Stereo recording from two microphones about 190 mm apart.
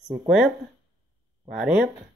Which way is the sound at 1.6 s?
5° right (ahead or behind).